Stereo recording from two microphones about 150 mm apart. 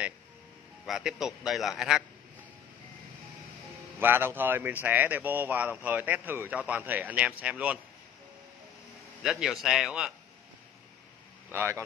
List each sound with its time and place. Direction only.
0.8 s a man's voice: 5° right (ahead or behind)
4.0 s a man's voice: 15° right (ahead or behind)
9.2 s a man's voice: 5° right (ahead or behind)
11.5 s a man's voice: 15° right (ahead or behind)